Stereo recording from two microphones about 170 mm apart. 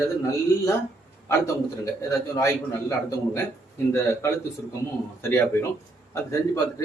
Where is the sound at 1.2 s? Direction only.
15° left (ahead or behind).